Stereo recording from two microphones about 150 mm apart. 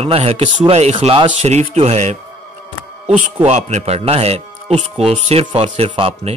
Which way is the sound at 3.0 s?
10° right (ahead or behind).